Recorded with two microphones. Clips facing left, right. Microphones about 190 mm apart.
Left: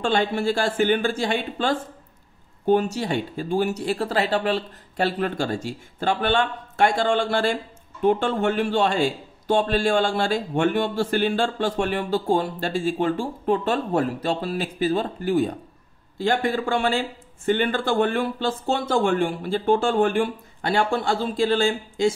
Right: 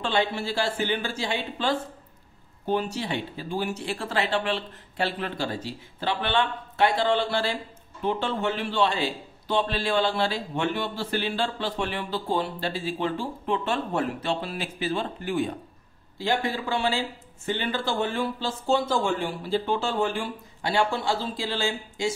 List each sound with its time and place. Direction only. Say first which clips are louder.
0.0 s a man's voice: left 4 dB; 45° left (ahead or behind)
16.2 s a man's voice: left 4 dB; 50° left (ahead or behind)